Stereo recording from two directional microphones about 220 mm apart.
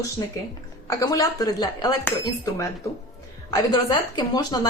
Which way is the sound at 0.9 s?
15° left (ahead or behind).